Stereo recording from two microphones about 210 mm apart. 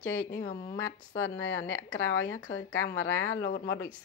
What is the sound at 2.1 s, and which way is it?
Speech, 75° left (ahead or behind).